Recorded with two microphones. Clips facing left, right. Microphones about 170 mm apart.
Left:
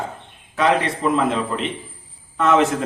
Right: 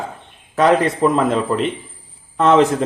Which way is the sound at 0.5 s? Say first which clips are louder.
Right 4 dB; 45° right (ahead or behind).